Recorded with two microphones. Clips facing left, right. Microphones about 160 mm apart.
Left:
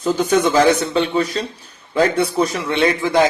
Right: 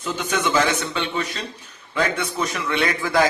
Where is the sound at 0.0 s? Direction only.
35° left (ahead or behind).